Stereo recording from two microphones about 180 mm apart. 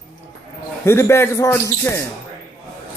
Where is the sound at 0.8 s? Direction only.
15° left (ahead or behind).